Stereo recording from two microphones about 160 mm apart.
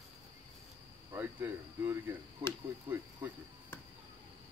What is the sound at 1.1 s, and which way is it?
Speech, 15° right (ahead or behind).